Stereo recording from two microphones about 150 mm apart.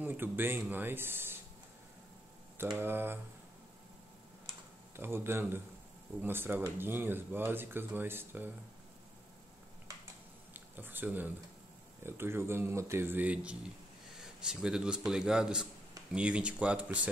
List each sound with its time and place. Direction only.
0.0 s speech: 15° right (ahead or behind)
2.6 s speech: 15° right (ahead or behind)
4.9 s speech: 15° right (ahead or behind)
10.5 s a sound: 15° right (ahead or behind)
12.0 s a man's voice: 15° right (ahead or behind)